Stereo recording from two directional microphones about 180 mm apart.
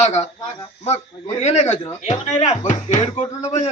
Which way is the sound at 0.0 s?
40° left (ahead or behind).